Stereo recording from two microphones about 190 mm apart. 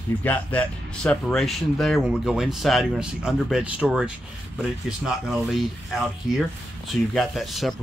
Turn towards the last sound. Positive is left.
turn(degrees=0)  # may be behind; listen again after turning